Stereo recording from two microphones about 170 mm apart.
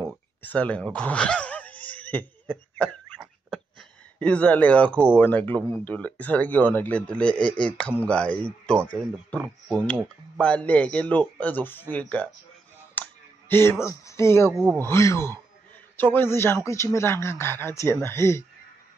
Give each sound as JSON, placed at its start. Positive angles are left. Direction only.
{"t": 0.4, "sound": "speech", "side_deg": 10}
{"t": 4.2, "sound": "a man's voice", "side_deg": 10}
{"t": 12.9, "sound": "a sound", "side_deg": 10}
{"t": 14.5, "sound": "speech", "side_deg": -5}
{"t": 14.9, "sound": "a man's voice", "side_deg": 15}